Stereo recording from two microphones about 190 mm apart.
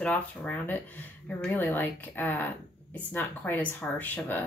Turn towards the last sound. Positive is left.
turn(degrees=10)  # may be behind; listen again after turning